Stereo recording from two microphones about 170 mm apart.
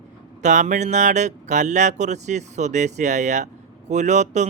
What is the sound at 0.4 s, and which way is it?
Speech, 45° right (ahead or behind).